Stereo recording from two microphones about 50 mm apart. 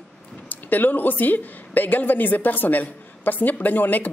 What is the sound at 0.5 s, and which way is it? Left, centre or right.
A man's voice, left.